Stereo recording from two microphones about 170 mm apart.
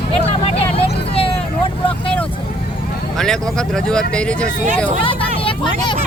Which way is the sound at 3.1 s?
5° left (ahead or behind).